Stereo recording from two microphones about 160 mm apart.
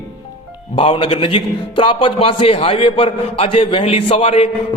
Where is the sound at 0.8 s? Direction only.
35° left (ahead or behind).